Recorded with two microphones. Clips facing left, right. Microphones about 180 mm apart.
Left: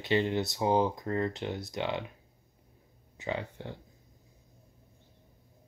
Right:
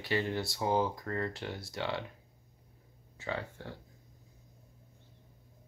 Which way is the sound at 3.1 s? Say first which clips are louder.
Left 3 dB; 20° left (ahead or behind).